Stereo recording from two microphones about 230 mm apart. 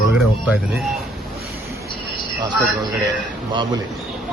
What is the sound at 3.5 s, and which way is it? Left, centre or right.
Speech, centre.